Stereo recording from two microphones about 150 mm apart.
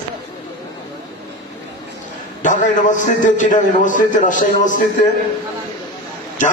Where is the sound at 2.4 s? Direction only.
55° left (ahead or behind).